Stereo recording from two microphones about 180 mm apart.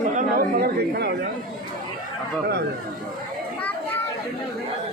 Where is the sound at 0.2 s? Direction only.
55° right (ahead or behind).